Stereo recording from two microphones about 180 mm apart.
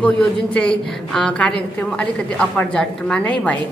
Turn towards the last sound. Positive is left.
turn(degrees=5)  # may be behind; listen again after turning